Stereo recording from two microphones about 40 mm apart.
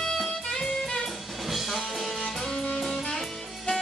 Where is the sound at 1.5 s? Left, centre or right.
Centre.